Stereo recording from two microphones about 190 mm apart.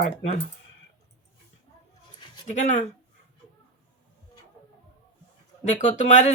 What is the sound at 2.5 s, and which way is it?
Speech, 40° left (ahead or behind).